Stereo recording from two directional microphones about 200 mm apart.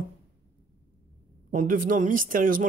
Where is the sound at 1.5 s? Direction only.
40° right (ahead or behind).